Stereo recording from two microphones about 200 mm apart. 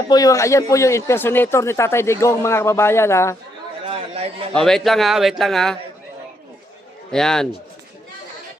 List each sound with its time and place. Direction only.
0.1 s speech: 15° left (ahead or behind)
3.8 s a sound: 30° right (ahead or behind)
4.5 s a man's voice: centre (ahead or behind)
7.1 s a man's voice: 5° left (ahead or behind)